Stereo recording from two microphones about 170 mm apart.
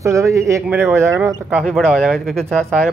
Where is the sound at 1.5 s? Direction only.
5° left (ahead or behind).